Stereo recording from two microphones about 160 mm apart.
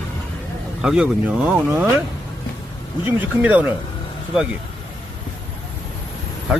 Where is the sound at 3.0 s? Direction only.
10° right (ahead or behind).